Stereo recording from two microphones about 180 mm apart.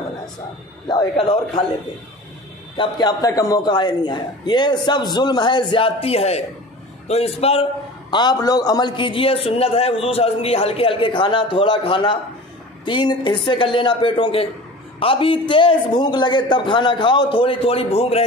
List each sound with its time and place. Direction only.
0.8 s a man's voice: 25° left (ahead or behind)
2.8 s a man's voice: 20° left (ahead or behind)
8.1 s a man's voice: 25° left (ahead or behind)